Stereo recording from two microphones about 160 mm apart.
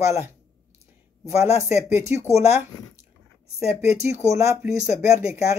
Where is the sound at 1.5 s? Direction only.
45° left (ahead or behind).